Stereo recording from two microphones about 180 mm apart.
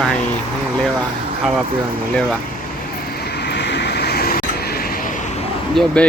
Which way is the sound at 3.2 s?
65° left (ahead or behind).